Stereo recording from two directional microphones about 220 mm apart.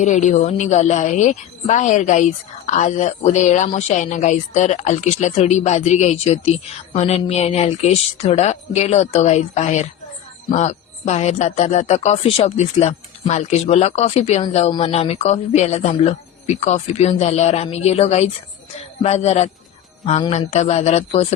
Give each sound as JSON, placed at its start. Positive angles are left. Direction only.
{"t": 0.0, "sound": "a woman's voice", "side_deg": 35}